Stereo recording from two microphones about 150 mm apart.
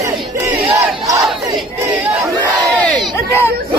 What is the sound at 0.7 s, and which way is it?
Crowd, 20° right (ahead or behind).